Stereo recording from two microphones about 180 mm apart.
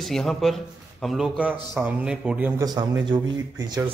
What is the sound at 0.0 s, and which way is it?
A man's voice, centre (ahead or behind).